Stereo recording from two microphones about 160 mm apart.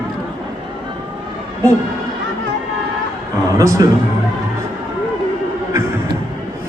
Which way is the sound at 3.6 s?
20° right (ahead or behind).